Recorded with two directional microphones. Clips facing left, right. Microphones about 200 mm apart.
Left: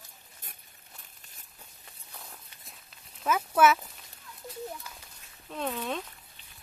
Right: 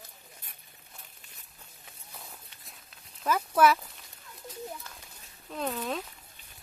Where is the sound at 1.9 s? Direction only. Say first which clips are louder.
Right 1 dB; centre (ahead or behind).